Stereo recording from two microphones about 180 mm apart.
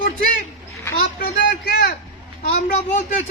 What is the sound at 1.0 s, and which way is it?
Speech, 55° left (ahead or behind).